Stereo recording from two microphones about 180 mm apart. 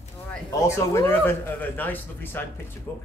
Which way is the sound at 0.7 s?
15° left (ahead or behind).